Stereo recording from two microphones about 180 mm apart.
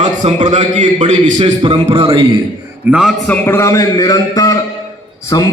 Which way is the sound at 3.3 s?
15° left (ahead or behind).